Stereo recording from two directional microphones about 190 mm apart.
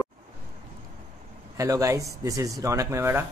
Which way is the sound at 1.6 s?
15° right (ahead or behind).